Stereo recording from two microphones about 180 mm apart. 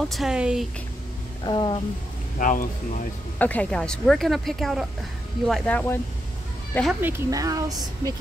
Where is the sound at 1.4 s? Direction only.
25° left (ahead or behind).